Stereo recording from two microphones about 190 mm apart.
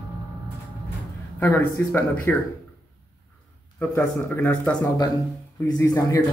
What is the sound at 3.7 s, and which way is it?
Speech, 10° left (ahead or behind).